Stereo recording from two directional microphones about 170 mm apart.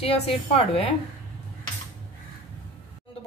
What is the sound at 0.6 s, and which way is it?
Speech, 35° left (ahead or behind).